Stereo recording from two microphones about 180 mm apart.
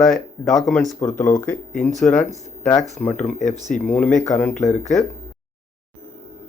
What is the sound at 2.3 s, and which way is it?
Speech, 15° left (ahead or behind).